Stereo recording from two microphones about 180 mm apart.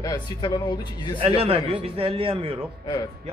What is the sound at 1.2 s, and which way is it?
A man's voice, 30° right (ahead or behind).